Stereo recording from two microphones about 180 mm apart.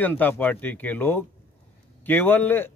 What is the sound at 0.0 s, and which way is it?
Speech, 10° left (ahead or behind).